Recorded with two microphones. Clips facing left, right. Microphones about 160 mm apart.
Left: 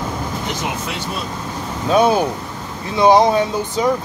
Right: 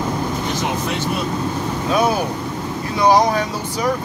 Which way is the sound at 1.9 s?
25° left (ahead or behind).